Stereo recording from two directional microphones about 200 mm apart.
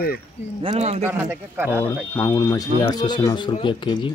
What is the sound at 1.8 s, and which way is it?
Speech, 10° left (ahead or behind).